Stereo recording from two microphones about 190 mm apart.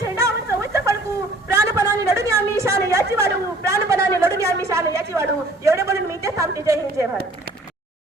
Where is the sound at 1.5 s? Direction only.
15° right (ahead or behind).